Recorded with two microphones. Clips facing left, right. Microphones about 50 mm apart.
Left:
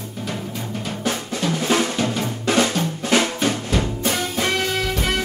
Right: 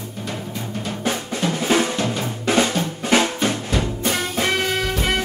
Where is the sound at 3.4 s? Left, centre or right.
Centre.